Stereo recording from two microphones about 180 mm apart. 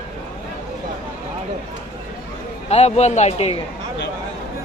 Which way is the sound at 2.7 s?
35° left (ahead or behind).